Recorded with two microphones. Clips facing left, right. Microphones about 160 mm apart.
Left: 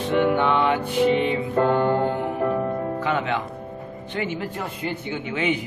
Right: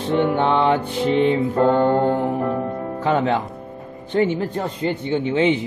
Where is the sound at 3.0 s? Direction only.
35° right (ahead or behind).